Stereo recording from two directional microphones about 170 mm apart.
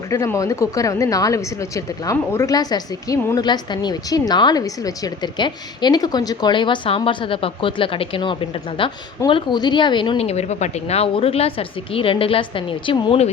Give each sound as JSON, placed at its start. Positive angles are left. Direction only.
{"t": 0.1, "sound": "a woman's voice", "side_deg": 20}